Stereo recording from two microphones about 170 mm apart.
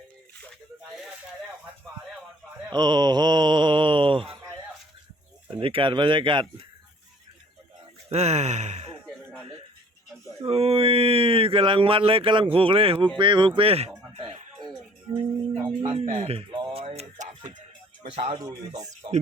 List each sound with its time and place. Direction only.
2.7 s mantra: 25° right (ahead or behind)
5.5 s speech: 30° right (ahead or behind)
8.1 s speech: 40° right (ahead or behind)
10.4 s speech: 35° right (ahead or behind)
13.1 s a sound: 30° right (ahead or behind)
15.8 s a man's voice: 35° right (ahead or behind)
16.8 s music: 40° right (ahead or behind)
18.0 s speech: 40° right (ahead or behind)
18.3 s speech: 20° right (ahead or behind)